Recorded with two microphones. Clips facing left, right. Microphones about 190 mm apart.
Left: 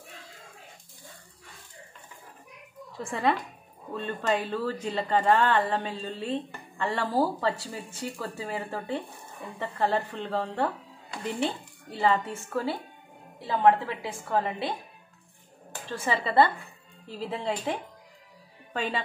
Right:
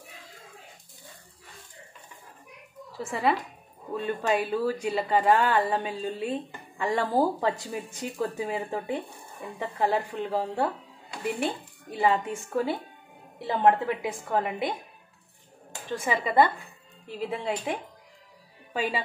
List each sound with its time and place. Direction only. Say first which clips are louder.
3.0 s a woman's voice: right 1 dB; 5° right (ahead or behind)
15.7 s a woman's voice: right 1 dB; 15° right (ahead or behind)